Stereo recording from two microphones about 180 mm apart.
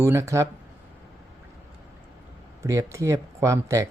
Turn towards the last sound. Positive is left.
turn(degrees=-15)  # may be behind; listen again after turning